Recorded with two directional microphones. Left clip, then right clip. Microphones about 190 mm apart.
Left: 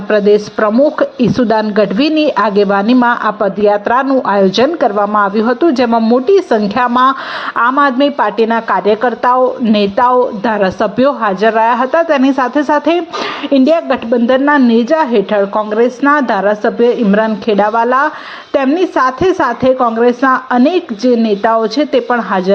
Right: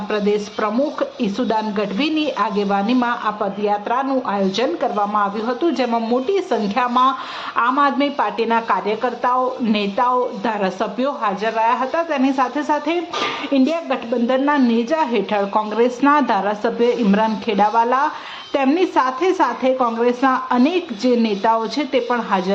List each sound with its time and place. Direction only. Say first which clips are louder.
0.1 s a woman's voice: left 11 dB; 30° left (ahead or behind)